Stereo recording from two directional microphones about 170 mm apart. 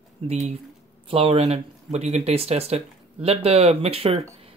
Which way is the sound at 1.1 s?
35° right (ahead or behind).